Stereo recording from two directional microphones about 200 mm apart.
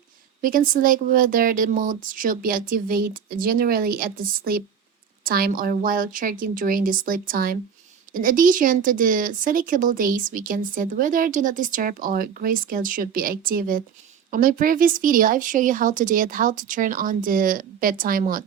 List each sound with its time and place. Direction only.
0.4 s speech: 45° right (ahead or behind)